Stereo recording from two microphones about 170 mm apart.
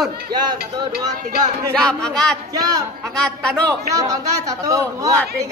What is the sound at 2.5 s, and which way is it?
Speech, 20° right (ahead or behind).